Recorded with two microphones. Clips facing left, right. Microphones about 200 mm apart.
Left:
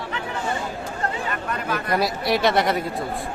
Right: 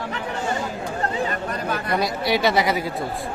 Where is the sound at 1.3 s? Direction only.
35° right (ahead or behind).